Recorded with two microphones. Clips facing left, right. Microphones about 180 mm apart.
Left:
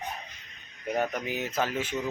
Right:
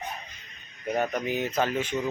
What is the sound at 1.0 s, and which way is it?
Speech, 10° left (ahead or behind).